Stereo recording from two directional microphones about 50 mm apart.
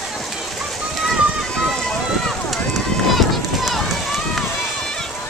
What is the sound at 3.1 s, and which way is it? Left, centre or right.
Run, centre.